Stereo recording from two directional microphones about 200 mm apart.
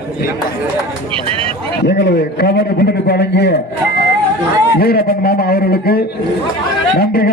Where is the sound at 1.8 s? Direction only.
55° left (ahead or behind).